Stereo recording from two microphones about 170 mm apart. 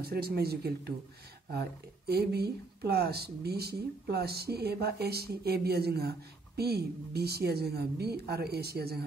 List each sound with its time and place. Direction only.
0.0 s speech: 65° right (ahead or behind)